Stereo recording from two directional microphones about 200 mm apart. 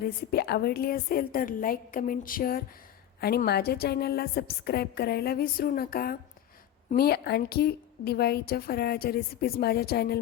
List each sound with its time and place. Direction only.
0.0 s a woman's voice: 50° left (ahead or behind)